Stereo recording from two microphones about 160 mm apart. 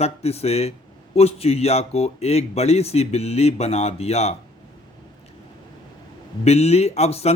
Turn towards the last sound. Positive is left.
turn(degrees=40)  # may be behind; listen again after turning